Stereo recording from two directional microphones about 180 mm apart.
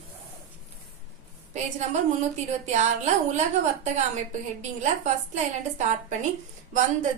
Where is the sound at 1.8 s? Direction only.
40° right (ahead or behind).